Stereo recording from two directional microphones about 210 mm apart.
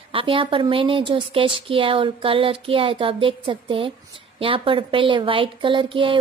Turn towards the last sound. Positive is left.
turn(degrees=-25)  # may be behind; listen again after turning